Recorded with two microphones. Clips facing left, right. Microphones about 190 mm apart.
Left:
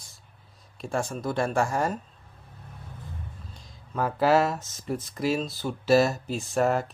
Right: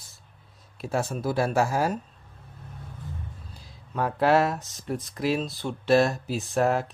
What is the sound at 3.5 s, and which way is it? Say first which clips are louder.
Speech: even; centre (ahead or behind).